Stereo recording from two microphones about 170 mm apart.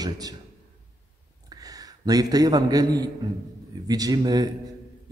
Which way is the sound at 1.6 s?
20° right (ahead or behind).